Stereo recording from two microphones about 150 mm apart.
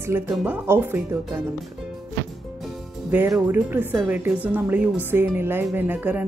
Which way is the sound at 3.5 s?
10° right (ahead or behind).